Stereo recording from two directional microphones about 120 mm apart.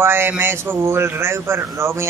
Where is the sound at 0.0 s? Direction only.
20° right (ahead or behind).